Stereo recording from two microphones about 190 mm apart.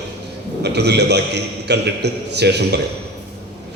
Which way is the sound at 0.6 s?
60° right (ahead or behind).